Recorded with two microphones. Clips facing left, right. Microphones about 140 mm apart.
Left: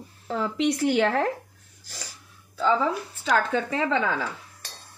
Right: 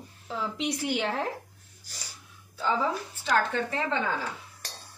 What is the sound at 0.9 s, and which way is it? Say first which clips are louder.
Speech: left 7 dB; 85° left.